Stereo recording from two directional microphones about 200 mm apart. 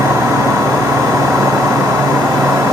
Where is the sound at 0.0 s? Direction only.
15° right (ahead or behind).